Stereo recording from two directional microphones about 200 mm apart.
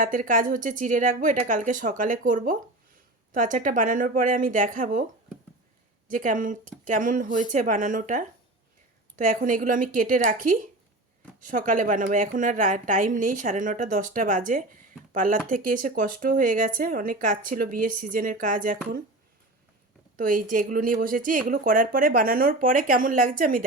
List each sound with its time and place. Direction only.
0.0 s a woman's voice: 40° right (ahead or behind)
6.1 s a woman's voice: 40° right (ahead or behind)
20.1 s speech: 40° right (ahead or behind)